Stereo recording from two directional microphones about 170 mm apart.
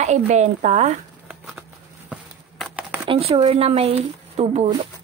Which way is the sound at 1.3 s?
Centre (ahead or behind).